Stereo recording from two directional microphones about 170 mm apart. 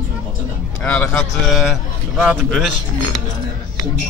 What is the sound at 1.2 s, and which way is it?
A man's voice, centre (ahead or behind).